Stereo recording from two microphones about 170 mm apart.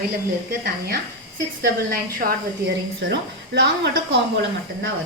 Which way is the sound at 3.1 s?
85° right.